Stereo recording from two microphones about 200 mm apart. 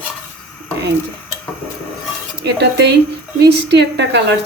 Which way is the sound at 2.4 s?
55° right (ahead or behind).